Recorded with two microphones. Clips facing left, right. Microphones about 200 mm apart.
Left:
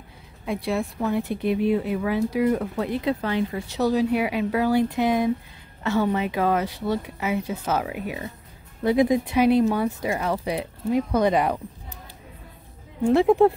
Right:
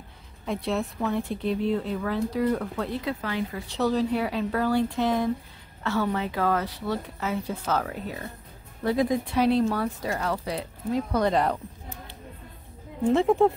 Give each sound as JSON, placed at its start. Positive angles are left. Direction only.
{"t": 0.5, "sound": "speech", "side_deg": 10}
{"t": 3.7, "sound": "speech", "side_deg": 10}
{"t": 13.1, "sound": "speech", "side_deg": 10}